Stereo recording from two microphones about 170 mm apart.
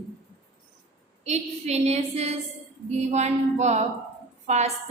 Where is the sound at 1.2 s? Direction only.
40° right (ahead or behind).